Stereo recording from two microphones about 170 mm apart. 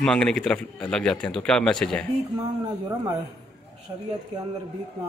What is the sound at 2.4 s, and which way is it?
Speech, 20° right (ahead or behind).